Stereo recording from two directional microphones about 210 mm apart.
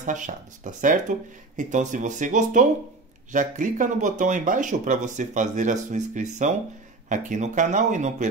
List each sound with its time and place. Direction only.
0.0 s speech: 35° right (ahead or behind)